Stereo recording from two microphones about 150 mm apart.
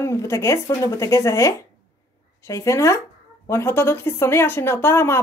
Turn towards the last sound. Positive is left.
turn(degrees=15)  # may be behind; listen again after turning